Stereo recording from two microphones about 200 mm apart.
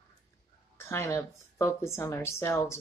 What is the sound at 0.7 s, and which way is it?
Speech, 15° left (ahead or behind).